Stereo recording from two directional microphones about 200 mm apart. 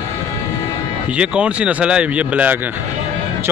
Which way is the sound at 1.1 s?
5° right (ahead or behind).